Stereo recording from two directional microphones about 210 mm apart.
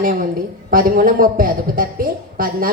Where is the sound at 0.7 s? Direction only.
40° right (ahead or behind).